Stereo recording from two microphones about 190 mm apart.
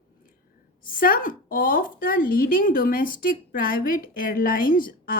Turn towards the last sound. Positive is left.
turn(degrees=50)  # may be behind; listen again after turning